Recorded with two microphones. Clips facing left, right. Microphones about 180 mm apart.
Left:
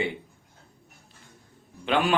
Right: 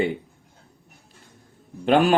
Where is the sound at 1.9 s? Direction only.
40° right (ahead or behind).